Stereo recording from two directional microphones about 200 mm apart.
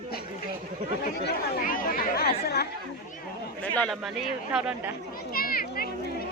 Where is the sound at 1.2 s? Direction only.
45° left (ahead or behind).